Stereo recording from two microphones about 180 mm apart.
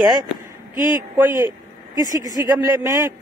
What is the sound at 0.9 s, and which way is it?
A man's voice, 15° right (ahead or behind).